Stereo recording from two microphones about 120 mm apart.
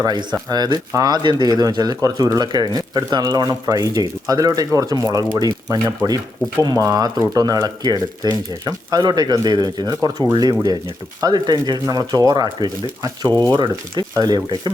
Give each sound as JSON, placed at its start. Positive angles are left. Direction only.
{"t": 0.0, "sound": "speech", "side_deg": -35}